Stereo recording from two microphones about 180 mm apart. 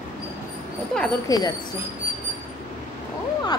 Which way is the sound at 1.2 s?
20° left (ahead or behind).